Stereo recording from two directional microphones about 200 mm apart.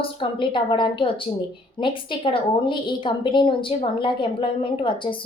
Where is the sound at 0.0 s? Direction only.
25° left (ahead or behind).